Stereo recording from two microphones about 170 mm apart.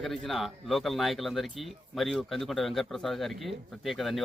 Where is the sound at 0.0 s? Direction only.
Centre (ahead or behind).